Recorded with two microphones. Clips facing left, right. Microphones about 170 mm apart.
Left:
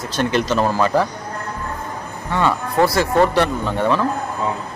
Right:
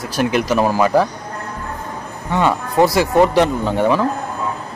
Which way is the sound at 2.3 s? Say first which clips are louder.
Right 2 dB; 15° right (ahead or behind).